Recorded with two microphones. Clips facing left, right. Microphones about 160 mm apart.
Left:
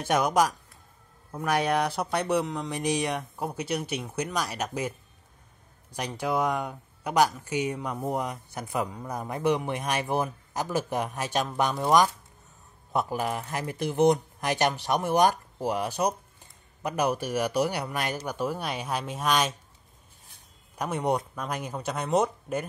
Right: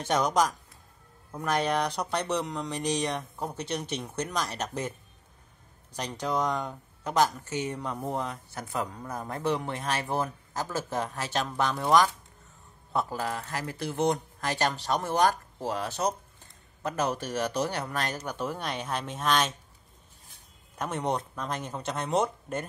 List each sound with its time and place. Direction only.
0.0 s speech: 10° left (ahead or behind)
5.9 s speech: 10° left (ahead or behind)
20.7 s speech: 10° left (ahead or behind)